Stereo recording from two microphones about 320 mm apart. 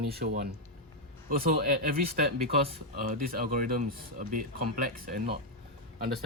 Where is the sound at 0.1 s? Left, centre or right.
Right.